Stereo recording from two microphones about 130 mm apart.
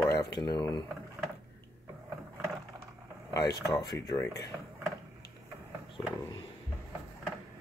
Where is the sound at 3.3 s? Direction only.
30° left (ahead or behind).